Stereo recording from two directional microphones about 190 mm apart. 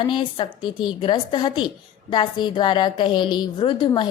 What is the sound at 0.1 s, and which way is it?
A woman's voice, 25° left (ahead or behind).